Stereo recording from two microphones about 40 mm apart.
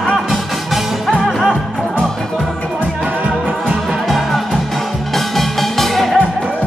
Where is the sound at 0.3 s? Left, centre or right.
Centre.